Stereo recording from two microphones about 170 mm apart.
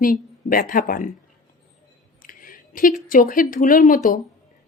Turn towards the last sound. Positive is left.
turn(degrees=55)  # may be behind; listen again after turning